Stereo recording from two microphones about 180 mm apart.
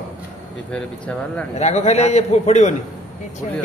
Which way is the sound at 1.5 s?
40° left (ahead or behind).